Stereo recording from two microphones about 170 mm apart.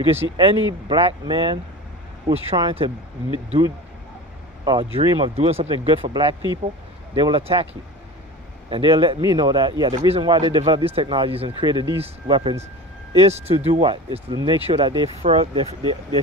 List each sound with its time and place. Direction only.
0.0 s speech: 35° right (ahead or behind)
4.6 s speech: 30° right (ahead or behind)
8.6 s speech: 30° right (ahead or behind)
15.3 s speech: 40° right (ahead or behind)